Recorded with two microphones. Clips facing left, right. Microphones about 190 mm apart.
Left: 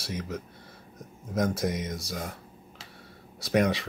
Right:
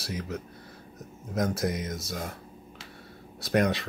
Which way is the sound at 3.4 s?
Centre (ahead or behind).